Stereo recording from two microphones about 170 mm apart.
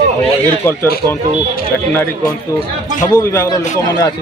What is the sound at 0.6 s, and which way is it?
Speech, 15° left (ahead or behind).